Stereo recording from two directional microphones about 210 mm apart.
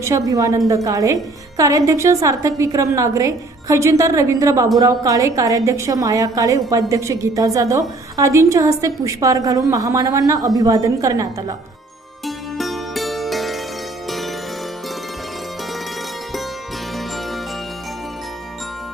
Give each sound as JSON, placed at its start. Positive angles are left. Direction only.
{"t": 0.0, "sound": "a woman's voice", "side_deg": -15}
{"t": 12.2, "sound": "music", "side_deg": 0}